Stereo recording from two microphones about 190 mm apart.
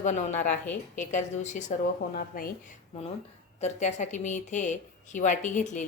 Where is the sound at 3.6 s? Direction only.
40° left (ahead or behind).